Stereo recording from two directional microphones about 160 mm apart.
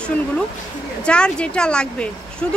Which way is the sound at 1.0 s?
5° left (ahead or behind).